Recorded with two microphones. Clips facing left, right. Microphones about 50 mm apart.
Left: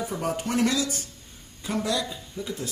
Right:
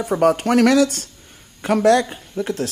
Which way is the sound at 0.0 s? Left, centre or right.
Right.